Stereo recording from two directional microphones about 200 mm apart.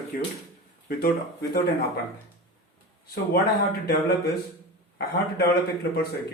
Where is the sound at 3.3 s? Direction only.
55° left (ahead or behind).